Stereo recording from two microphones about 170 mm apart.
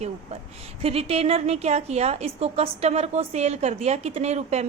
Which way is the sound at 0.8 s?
35° right (ahead or behind).